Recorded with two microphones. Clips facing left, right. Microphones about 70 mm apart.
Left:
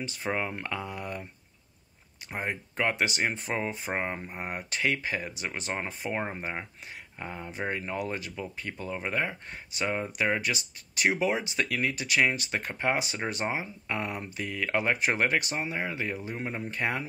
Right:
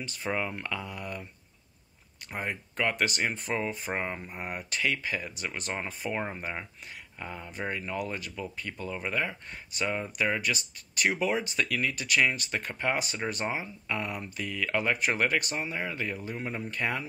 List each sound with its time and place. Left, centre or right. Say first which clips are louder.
0.0 s speech: left 1 dB; left
2.3 s speech: left 1 dB; left